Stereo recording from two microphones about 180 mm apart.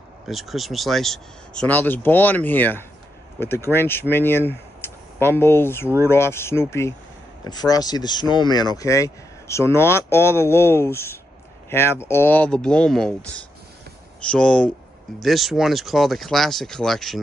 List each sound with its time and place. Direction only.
0.3 s speech: centre (ahead or behind)
14.2 s speech: 5° left (ahead or behind)